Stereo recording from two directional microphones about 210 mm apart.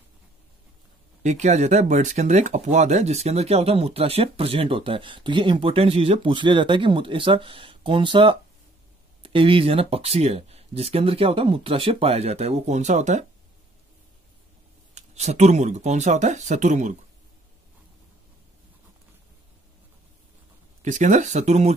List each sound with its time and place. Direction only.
1.2 s speech: 35° right (ahead or behind)
15.0 s speech: 30° right (ahead or behind)
20.8 s speech: 35° right (ahead or behind)